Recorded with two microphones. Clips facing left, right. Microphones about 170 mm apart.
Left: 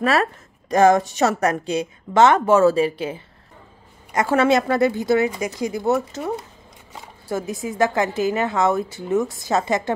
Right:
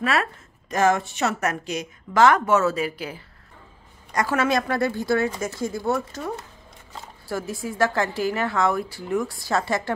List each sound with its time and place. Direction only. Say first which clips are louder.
0.0 s a woman's voice: left 5 dB; 40° left (ahead or behind); by 9.9 s 20° left (ahead or behind)